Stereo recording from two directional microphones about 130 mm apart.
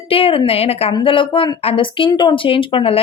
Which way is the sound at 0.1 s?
45° left (ahead or behind).